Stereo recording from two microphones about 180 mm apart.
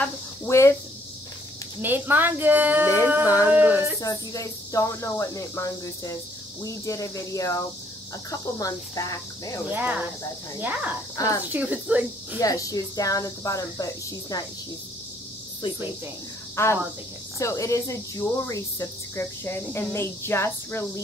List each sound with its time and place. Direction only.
0.0 s a sound: 15° left (ahead or behind)
1.8 s a woman's voice: 10° right (ahead or behind)
4.0 s speech: 20° left (ahead or behind)
9.7 s a woman's voice: 10° right (ahead or behind)
11.1 s speech: 20° left (ahead or behind)
11.5 s a woman's voice: 10° right (ahead or behind)
12.4 s speech: 20° left (ahead or behind)
15.6 s speech: 25° left (ahead or behind)
16.6 s speech: 15° left (ahead or behind)